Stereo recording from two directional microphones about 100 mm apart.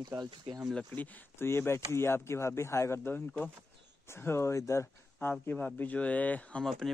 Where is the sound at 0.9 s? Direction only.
20° left (ahead or behind).